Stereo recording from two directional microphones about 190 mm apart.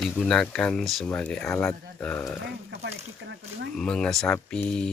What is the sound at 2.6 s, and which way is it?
Speech, 70° right (ahead or behind).